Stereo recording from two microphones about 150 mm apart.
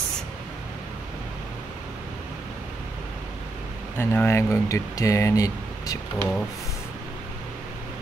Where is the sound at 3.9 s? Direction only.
15° left (ahead or behind).